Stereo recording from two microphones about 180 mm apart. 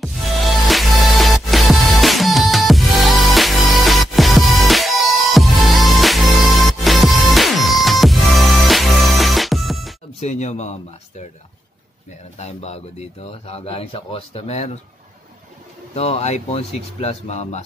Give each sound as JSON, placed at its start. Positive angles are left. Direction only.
{"t": 0.7, "sound": "music", "side_deg": 0}
{"t": 10.2, "sound": "speech", "side_deg": 40}
{"t": 12.4, "sound": "speech", "side_deg": 35}
{"t": 15.9, "sound": "speech", "side_deg": 35}